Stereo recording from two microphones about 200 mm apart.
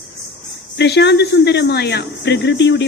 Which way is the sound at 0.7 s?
60° left (ahead or behind).